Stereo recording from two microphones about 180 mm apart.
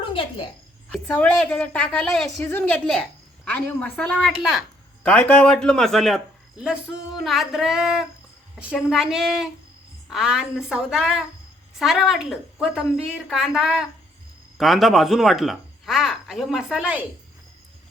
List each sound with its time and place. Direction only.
0.1 s a woman's voice: 30° left (ahead or behind)
0.9 s a woman's voice: 5° left (ahead or behind)